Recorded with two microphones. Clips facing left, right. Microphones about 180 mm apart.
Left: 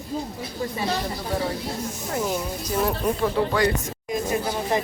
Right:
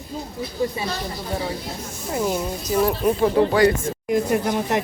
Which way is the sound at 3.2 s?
30° right (ahead or behind).